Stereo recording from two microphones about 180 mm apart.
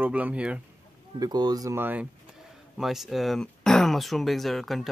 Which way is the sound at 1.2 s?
20° right (ahead or behind).